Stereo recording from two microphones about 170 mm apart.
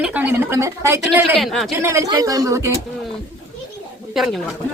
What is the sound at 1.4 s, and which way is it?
Speech, centre (ahead or behind).